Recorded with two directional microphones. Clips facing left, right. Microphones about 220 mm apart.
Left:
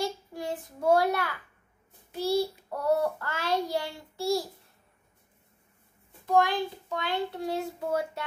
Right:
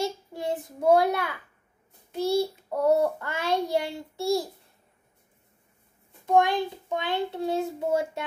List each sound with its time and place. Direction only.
0.0 s child singing: 25° right (ahead or behind)
6.2 s child singing: 20° right (ahead or behind)